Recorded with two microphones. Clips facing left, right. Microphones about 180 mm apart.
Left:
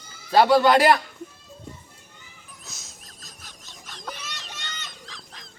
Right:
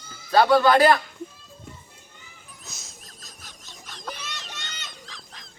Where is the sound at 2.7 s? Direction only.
Centre (ahead or behind).